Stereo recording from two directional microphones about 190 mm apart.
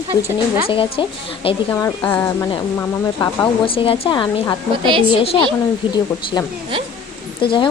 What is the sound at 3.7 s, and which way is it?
Speech, 30° left (ahead or behind).